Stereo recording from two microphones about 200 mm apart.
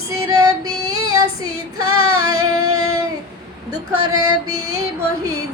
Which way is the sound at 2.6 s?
90° right.